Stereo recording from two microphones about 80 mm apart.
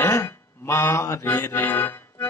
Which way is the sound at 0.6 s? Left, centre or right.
Left.